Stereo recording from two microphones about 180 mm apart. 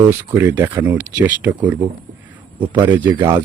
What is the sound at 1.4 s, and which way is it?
Speech, 10° right (ahead or behind).